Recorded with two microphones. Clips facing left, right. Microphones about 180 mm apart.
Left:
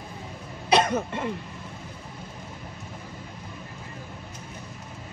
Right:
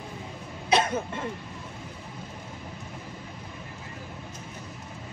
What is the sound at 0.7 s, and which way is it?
Cough, 70° left (ahead or behind).